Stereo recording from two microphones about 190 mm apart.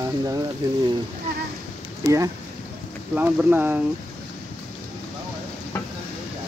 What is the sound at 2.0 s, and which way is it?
Speech, 15° right (ahead or behind).